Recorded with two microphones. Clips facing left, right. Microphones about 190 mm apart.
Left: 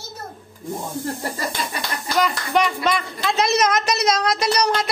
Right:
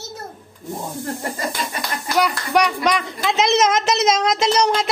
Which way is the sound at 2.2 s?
15° right (ahead or behind).